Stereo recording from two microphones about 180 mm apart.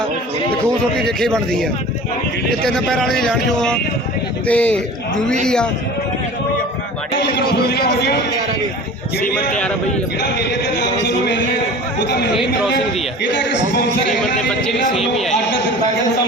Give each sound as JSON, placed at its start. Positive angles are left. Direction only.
{"t": 0.9, "sound": "speech", "side_deg": 5}
{"t": 2.6, "sound": "a man's voice", "side_deg": 5}
{"t": 7.2, "sound": "a man's voice", "side_deg": 70}
{"t": 10.2, "sound": "speech", "side_deg": 70}
{"t": 13.3, "sound": "speech", "side_deg": 75}